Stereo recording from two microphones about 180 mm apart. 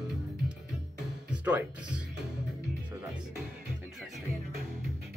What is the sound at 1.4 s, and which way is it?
Speech, 10° right (ahead or behind).